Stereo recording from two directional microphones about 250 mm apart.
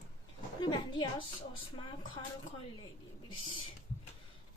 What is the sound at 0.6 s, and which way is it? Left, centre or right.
A woman's voice, centre.